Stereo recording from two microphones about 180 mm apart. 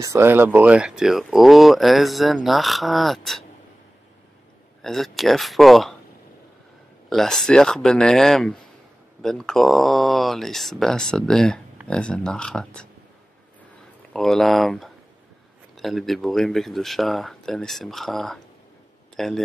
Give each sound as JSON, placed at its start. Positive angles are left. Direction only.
{"t": 0.0, "sound": "speech", "side_deg": -15}
{"t": 4.8, "sound": "speech", "side_deg": 0}
{"t": 7.1, "sound": "speech", "side_deg": 0}
{"t": 14.1, "sound": "speech", "side_deg": 0}